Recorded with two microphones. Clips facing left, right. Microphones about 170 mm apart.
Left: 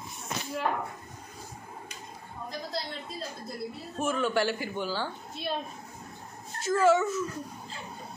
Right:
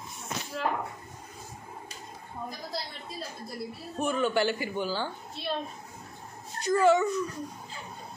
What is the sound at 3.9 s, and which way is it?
A woman's voice, centre (ahead or behind).